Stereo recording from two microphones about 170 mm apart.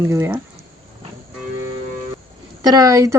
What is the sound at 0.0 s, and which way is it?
Speech, 20° right (ahead or behind).